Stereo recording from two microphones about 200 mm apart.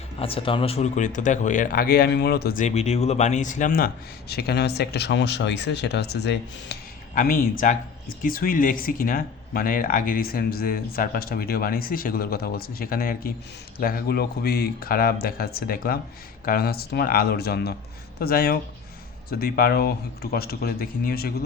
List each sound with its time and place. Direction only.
0.2 s speech: 30° left (ahead or behind); by 21.3 s 50° left (ahead or behind)